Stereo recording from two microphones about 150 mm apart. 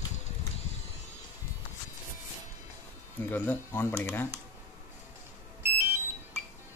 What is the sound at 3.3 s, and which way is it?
Speech, 15° left (ahead or behind).